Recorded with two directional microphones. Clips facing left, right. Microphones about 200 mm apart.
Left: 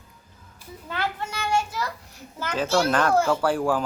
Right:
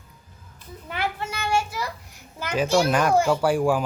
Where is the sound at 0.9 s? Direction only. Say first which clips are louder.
Right 1 dB; 10° right (ahead or behind).